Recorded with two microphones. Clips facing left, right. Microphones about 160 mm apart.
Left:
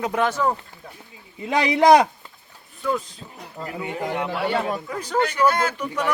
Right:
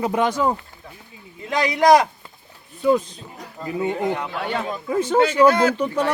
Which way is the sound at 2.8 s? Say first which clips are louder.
Right 7 dB; 20° right (ahead or behind).